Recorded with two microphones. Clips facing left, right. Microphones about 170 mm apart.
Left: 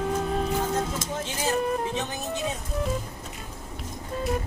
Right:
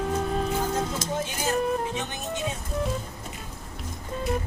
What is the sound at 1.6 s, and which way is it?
Music, centre (ahead or behind).